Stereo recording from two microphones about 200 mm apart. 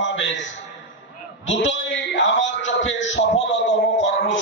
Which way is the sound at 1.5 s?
65° left (ahead or behind).